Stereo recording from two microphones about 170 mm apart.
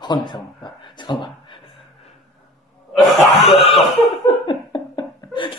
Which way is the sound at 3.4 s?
35° left (ahead or behind).